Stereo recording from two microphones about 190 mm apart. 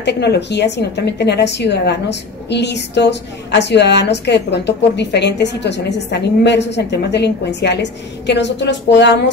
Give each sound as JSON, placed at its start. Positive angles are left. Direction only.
{"t": 0.0, "sound": "a woman's voice", "side_deg": 60}